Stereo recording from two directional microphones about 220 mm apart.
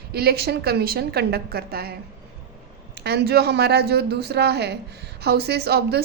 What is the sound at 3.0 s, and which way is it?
A woman's voice, 50° right (ahead or behind).